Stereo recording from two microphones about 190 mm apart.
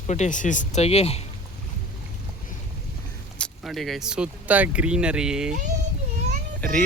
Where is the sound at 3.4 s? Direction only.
Centre (ahead or behind).